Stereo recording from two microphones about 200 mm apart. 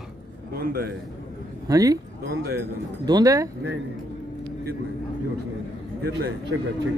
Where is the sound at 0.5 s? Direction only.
50° right (ahead or behind).